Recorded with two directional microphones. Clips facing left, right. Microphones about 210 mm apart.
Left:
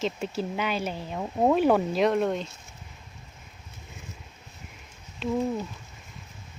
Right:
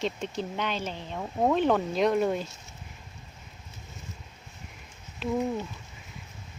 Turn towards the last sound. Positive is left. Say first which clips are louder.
# left 1 dB
turn(degrees=0)  # may be behind; listen again after turning